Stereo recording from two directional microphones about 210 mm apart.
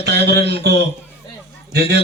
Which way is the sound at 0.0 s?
50° right (ahead or behind).